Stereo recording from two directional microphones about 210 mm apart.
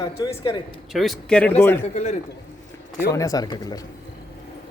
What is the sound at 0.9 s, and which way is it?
Speech, centre (ahead or behind).